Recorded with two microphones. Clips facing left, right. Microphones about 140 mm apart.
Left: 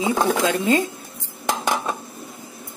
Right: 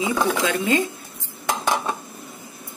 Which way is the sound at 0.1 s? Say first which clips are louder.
Left 2 dB; 40° left (ahead or behind).